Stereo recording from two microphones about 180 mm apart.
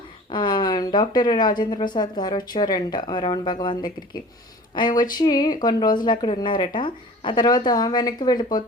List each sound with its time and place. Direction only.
0.3 s speech: 25° left (ahead or behind)